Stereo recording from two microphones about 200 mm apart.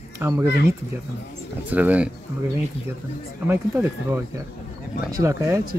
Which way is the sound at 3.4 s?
10° right (ahead or behind).